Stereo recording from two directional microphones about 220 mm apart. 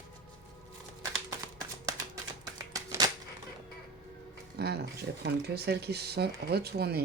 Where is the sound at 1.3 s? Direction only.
15° right (ahead or behind).